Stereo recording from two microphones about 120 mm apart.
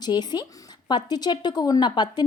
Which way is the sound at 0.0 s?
35° left (ahead or behind).